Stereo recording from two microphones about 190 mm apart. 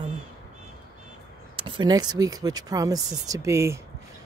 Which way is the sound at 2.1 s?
20° right (ahead or behind).